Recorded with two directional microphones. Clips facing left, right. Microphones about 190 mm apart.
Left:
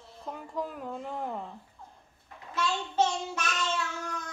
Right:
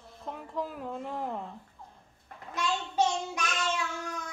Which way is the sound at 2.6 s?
15° right (ahead or behind).